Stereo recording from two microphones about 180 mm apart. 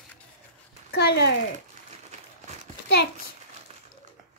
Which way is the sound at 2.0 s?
40° right (ahead or behind).